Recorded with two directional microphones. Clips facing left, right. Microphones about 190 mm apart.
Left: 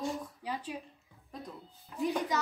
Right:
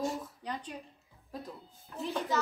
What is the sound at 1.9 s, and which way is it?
Speech, 15° left (ahead or behind).